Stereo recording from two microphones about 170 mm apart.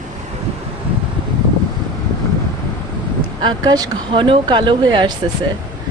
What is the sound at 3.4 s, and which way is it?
A woman's voice, 25° right (ahead or behind).